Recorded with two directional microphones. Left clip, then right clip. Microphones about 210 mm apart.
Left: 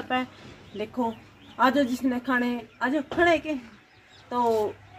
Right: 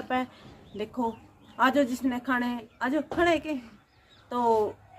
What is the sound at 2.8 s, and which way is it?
Speech, 10° right (ahead or behind).